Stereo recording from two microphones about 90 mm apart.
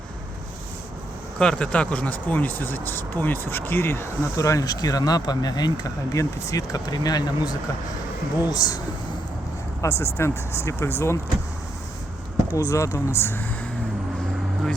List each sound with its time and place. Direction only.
1.4 s speech: 10° left (ahead or behind); by 8.8 s 45° left (ahead or behind)
9.8 s speech: 30° left (ahead or behind)
12.5 s speech: 35° left (ahead or behind)